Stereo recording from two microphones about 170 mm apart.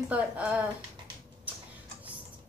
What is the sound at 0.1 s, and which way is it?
Speech, 10° right (ahead or behind).